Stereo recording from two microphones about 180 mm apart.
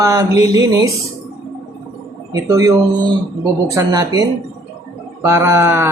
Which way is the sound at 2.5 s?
15° right (ahead or behind).